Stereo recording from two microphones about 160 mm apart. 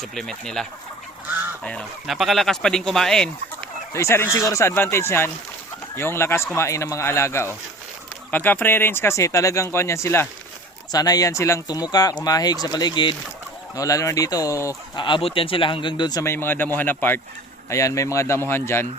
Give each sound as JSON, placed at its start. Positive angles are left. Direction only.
{"t": 0.0, "sound": "speech", "side_deg": 5}
{"t": 3.9, "sound": "speech", "side_deg": 15}